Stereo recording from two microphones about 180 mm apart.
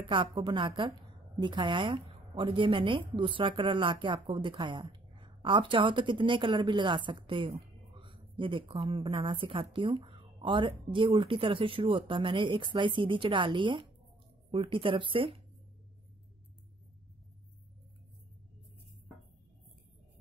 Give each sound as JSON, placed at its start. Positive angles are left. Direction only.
{"t": 0.0, "sound": "a woman's voice", "side_deg": -30}